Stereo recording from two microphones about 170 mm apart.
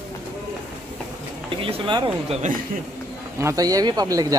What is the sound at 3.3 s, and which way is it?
A man's voice, 20° right (ahead or behind).